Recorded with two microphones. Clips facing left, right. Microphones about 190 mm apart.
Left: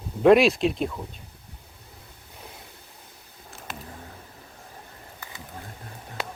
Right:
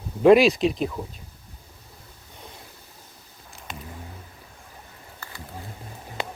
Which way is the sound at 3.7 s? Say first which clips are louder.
Right 1 dB; 5° left (ahead or behind).